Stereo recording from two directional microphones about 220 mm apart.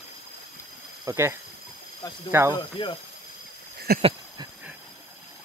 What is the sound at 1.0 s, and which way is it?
Speech, 15° right (ahead or behind).